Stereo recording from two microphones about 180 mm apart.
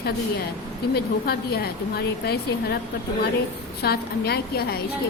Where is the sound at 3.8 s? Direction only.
60° left (ahead or behind).